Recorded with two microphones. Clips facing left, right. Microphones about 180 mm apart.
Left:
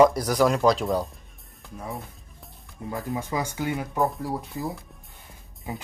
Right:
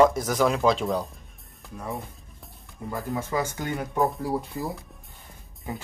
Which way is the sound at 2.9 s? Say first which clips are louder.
Right 1 dB; 15° left (ahead or behind).